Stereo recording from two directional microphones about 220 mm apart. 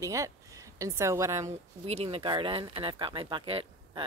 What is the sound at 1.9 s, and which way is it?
Speech, 25° right (ahead or behind).